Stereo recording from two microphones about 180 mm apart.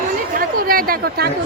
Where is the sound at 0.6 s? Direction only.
55° right (ahead or behind).